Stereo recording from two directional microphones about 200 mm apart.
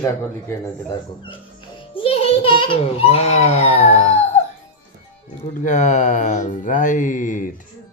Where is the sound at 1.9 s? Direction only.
30° left (ahead or behind).